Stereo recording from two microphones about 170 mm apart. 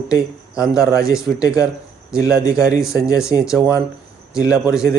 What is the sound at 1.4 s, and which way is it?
Speech, 20° left (ahead or behind).